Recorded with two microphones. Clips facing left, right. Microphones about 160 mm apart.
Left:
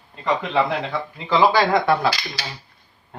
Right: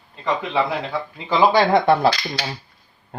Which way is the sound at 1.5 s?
20° right (ahead or behind).